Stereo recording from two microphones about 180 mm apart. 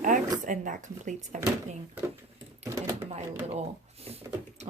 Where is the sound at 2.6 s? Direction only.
15° right (ahead or behind).